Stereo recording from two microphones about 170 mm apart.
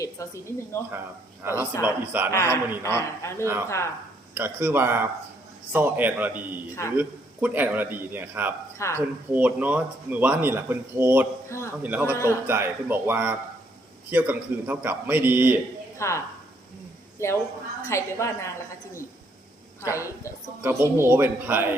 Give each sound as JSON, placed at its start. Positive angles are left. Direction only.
{"t": 0.0, "sound": "a man's voice", "side_deg": 15}
{"t": 1.4, "sound": "a man's voice", "side_deg": -15}
{"t": 2.3, "sound": "a man's voice", "side_deg": 15}
{"t": 3.4, "sound": "speech", "side_deg": -15}
{"t": 11.4, "sound": "a man's voice", "side_deg": 15}
{"t": 11.8, "sound": "speech", "side_deg": -10}
{"t": 16.0, "sound": "a woman's voice", "side_deg": 15}
{"t": 19.9, "sound": "a man's voice", "side_deg": 15}
{"t": 20.6, "sound": "speech", "side_deg": -10}